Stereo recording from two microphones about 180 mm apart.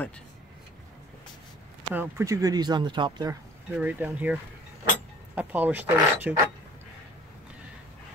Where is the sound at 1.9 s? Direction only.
10° right (ahead or behind).